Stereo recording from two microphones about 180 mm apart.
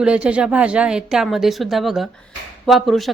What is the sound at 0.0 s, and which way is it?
Speech, 5° right (ahead or behind).